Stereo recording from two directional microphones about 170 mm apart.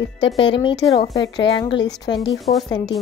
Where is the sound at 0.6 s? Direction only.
25° left (ahead or behind).